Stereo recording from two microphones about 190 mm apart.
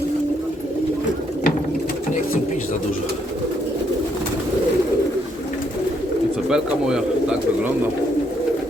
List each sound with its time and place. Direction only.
6.5 s speech: 5° right (ahead or behind)